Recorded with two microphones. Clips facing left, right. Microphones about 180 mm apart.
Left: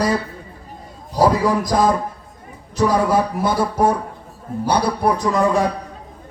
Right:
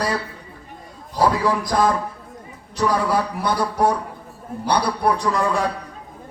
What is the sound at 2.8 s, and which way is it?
Speech, 20° left (ahead or behind).